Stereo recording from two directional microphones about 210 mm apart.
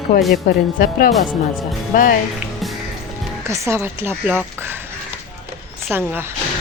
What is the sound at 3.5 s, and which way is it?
A woman's voice, 15° right (ahead or behind).